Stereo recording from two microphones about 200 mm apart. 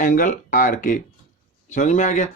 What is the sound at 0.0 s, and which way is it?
Speech, 40° left (ahead or behind).